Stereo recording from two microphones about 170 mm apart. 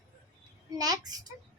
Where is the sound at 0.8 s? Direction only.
20° right (ahead or behind).